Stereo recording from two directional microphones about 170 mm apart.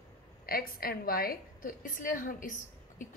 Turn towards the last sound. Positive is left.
turn(degrees=50)  # may be behind; listen again after turning